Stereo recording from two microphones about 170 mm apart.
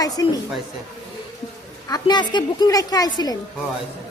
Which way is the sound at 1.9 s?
25° left (ahead or behind).